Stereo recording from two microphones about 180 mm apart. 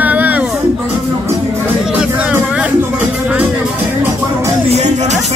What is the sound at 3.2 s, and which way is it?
Music, 10° right (ahead or behind).